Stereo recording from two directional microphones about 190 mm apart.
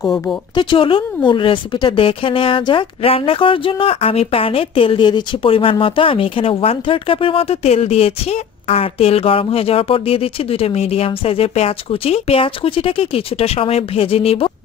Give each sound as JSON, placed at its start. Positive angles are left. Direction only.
{"t": 0.0, "sound": "speech", "side_deg": 0}
{"t": 0.5, "sound": "a woman's voice", "side_deg": 25}